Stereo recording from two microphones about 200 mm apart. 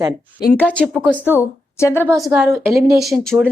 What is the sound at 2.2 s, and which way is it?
Speech, 5° right (ahead or behind).